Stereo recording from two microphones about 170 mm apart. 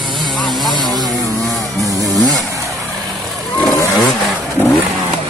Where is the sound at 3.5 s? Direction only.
10° left (ahead or behind).